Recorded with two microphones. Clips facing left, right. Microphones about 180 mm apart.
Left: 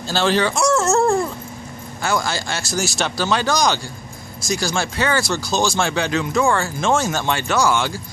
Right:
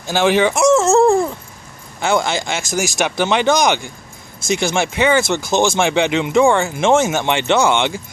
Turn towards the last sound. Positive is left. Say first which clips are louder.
# right 4 dB
turn(degrees=-25)  # may be behind; listen again after turning